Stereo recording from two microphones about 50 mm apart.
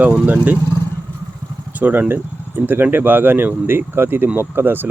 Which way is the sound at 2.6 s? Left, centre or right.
Right.